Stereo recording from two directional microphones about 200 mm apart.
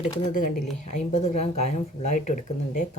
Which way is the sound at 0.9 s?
35° left (ahead or behind).